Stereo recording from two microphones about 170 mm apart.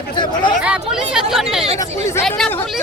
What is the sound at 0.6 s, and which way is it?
Speech, 5° right (ahead or behind).